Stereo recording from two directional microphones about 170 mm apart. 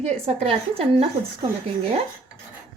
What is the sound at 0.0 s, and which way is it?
A woman's voice, 40° right (ahead or behind).